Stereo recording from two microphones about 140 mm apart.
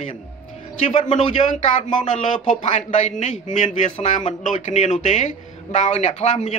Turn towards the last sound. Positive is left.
turn(degrees=55)  # may be behind; listen again after turning